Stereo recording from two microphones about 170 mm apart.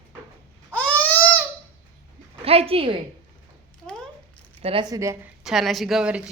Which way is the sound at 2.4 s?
35° right (ahead or behind).